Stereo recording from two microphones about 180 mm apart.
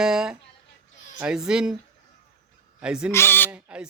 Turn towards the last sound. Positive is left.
turn(degrees=-5)  # may be behind; listen again after turning